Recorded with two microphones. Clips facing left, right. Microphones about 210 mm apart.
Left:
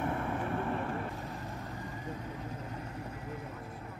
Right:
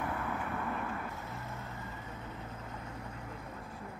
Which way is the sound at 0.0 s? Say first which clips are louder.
Left 3 dB; 30° left (ahead or behind).